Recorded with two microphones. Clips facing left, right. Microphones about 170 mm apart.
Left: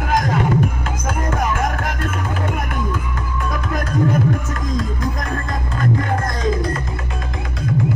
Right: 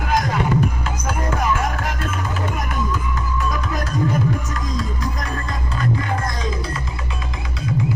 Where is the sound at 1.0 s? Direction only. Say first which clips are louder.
Left 1 dB; 50° left (ahead or behind).